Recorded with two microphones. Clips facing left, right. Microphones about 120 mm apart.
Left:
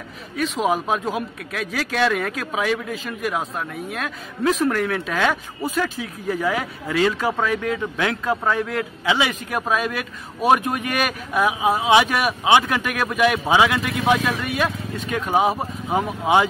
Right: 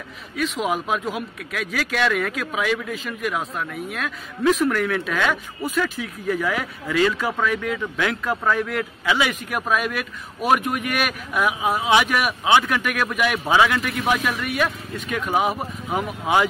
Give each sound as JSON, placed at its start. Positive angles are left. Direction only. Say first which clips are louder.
{"t": 0.4, "sound": "a man's voice", "louder": "left 2 dB", "side_deg": 35}
{"t": 13.5, "sound": "a man's voice", "louder": "left 1 dB", "side_deg": 20}